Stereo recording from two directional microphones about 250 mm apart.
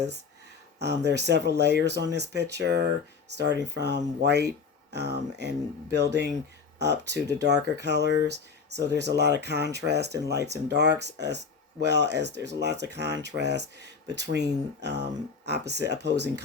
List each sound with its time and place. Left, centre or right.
0.8 s speech: right
8.0 s speech: left
8.3 s speech: right